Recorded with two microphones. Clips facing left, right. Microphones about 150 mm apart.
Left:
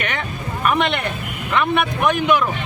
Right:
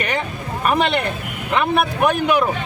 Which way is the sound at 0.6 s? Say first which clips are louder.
Right 1 dB; 35° right (ahead or behind).